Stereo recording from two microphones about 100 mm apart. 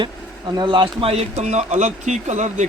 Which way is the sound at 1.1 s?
90° right.